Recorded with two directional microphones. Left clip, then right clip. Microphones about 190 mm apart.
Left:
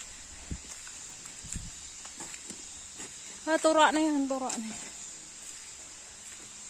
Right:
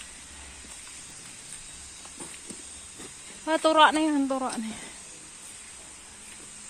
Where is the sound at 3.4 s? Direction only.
30° left (ahead or behind).